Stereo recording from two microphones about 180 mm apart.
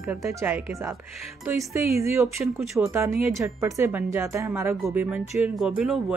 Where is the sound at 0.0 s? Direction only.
15° right (ahead or behind).